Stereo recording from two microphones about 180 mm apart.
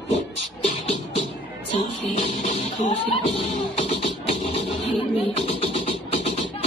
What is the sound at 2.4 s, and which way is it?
Music, 35° left (ahead or behind).